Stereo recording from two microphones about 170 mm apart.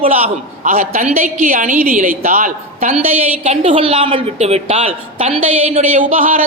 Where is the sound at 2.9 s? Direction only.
35° right (ahead or behind).